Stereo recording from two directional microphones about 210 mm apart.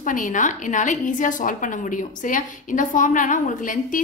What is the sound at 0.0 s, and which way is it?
A woman's voice, 40° left (ahead or behind).